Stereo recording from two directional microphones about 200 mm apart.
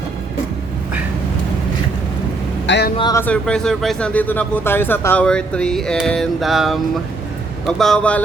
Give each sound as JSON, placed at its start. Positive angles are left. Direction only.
{"t": 2.6, "sound": "speech", "side_deg": 60}
{"t": 3.0, "sound": "speech", "side_deg": 20}
{"t": 3.2, "sound": "speech", "side_deg": 5}